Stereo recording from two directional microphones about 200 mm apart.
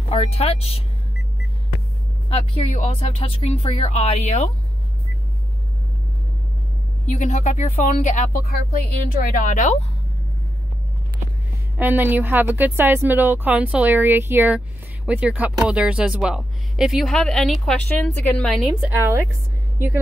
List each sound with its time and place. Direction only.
0.1 s speech: 30° left (ahead or behind)
2.2 s speech: 30° left (ahead or behind)
7.1 s speech: 35° left (ahead or behind)
11.8 s a woman's voice: 10° right (ahead or behind)